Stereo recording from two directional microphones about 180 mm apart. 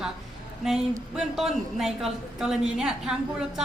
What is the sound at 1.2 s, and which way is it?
Speech, centre (ahead or behind).